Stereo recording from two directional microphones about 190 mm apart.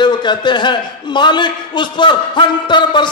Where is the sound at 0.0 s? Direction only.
25° left (ahead or behind).